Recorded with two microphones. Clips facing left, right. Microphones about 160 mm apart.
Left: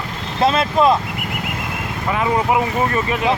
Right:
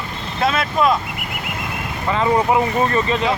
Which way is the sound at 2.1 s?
10° left (ahead or behind).